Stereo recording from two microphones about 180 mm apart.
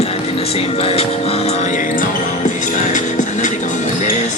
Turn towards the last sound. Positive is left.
turn(degrees=45)  # may be behind; listen again after turning